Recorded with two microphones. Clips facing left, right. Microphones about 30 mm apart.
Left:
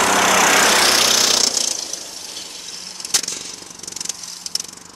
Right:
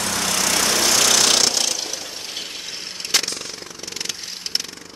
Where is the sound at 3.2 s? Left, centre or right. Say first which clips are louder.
Right 1 dB; right.